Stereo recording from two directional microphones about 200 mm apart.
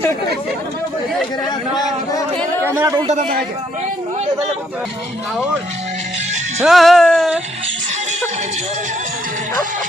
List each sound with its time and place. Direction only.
2.7 s speech: 20° right (ahead or behind)
6.6 s speech: centre (ahead or behind)